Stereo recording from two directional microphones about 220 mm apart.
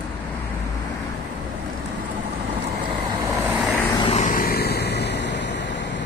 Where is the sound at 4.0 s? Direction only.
30° left (ahead or behind); by 5.3 s 50° left (ahead or behind).